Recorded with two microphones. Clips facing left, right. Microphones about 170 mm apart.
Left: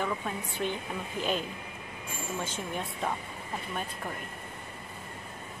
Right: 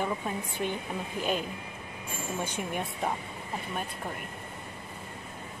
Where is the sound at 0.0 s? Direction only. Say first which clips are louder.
Right 1 dB; 15° right (ahead or behind).